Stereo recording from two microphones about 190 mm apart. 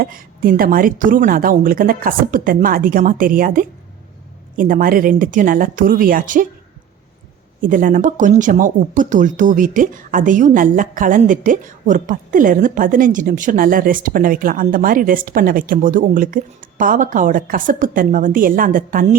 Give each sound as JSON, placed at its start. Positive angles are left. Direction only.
{"t": 0.0, "sound": "speech", "side_deg": -50}
{"t": 7.6, "sound": "speech", "side_deg": -45}